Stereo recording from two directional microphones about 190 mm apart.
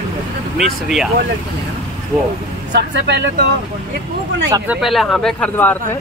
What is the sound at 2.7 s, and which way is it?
Speech, 65° right (ahead or behind).